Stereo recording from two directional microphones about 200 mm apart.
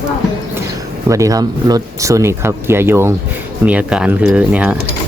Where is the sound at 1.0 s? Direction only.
15° right (ahead or behind).